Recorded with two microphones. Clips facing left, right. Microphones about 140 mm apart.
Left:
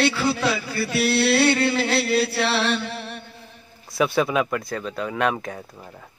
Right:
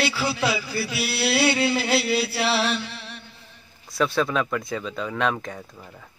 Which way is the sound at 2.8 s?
55° left (ahead or behind).